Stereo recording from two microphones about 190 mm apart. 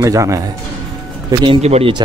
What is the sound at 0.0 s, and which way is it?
Speech, 15° right (ahead or behind).